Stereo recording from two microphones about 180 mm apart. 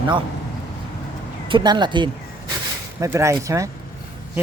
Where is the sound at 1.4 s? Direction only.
25° right (ahead or behind).